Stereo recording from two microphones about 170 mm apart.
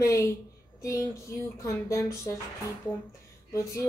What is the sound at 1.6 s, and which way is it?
Speech, 20° left (ahead or behind).